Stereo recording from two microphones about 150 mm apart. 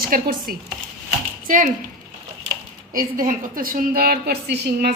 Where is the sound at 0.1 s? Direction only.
70° right (ahead or behind).